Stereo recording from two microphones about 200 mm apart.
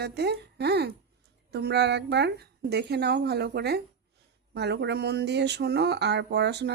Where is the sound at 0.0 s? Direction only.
55° right (ahead or behind).